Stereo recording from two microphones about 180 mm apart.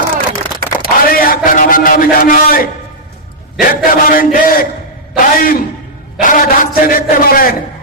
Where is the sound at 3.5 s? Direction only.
50° left (ahead or behind).